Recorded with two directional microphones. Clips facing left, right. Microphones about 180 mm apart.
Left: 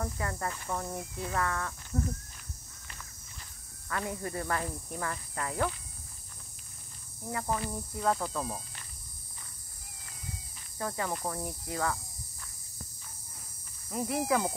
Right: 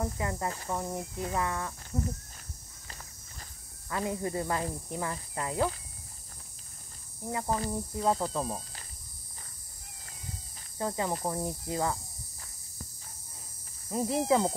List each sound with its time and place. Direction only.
0.0 s speech: 20° right (ahead or behind)
3.9 s speech: 20° right (ahead or behind)
7.2 s speech: 20° right (ahead or behind)
10.8 s speech: 20° right (ahead or behind)
13.8 s speech: 25° right (ahead or behind)